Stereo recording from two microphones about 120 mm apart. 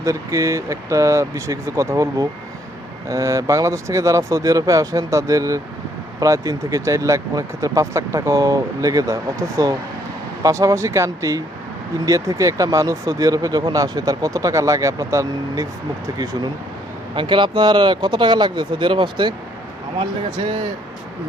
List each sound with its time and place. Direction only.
0.0 s speech: 25° right (ahead or behind); by 20.6 s 45° right (ahead or behind)